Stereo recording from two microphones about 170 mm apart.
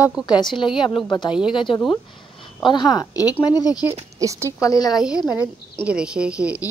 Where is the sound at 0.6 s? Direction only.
30° left (ahead or behind).